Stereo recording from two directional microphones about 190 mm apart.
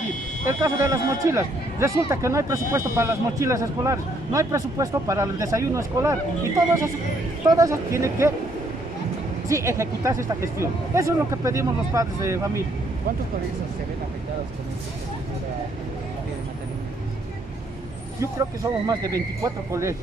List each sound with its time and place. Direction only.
0.6 s speech: 15° right (ahead or behind)
7.4 s speech: 15° right (ahead or behind)
9.5 s speech: 15° right (ahead or behind)
18.2 s speech: 20° right (ahead or behind)